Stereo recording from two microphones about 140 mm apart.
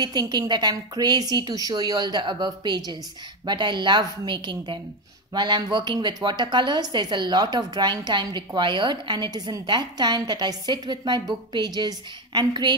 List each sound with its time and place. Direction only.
0.0 s a woman's voice: 30° right (ahead or behind)